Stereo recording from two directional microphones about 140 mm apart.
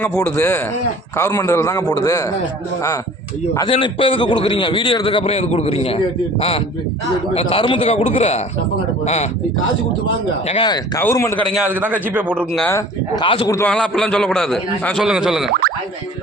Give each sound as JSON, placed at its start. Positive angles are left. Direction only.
{"t": 0.0, "sound": "speech", "side_deg": 5}
{"t": 0.3, "sound": "a man's voice", "side_deg": 20}
{"t": 3.7, "sound": "a man's voice", "side_deg": 40}
{"t": 7.3, "sound": "a man's voice", "side_deg": 40}
{"t": 10.5, "sound": "a man's voice", "side_deg": 35}
{"t": 10.9, "sound": "a man's voice", "side_deg": 20}
{"t": 11.6, "sound": "a man's voice", "side_deg": -15}
{"t": 13.1, "sound": "a man's voice", "side_deg": 35}
{"t": 13.7, "sound": "a man's voice", "side_deg": 5}